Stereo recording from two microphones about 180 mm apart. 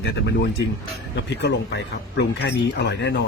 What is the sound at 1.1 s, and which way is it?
Speech, 75° left (ahead or behind).